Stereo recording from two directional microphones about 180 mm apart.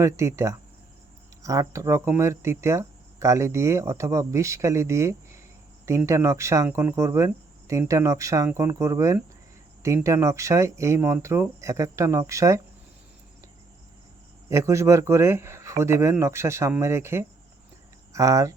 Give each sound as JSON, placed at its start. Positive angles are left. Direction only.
{"t": 0.0, "sound": "speech", "side_deg": -15}
{"t": 14.5, "sound": "speech", "side_deg": -15}